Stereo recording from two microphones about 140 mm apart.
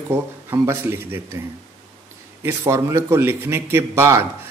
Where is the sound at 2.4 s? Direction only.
20° right (ahead or behind).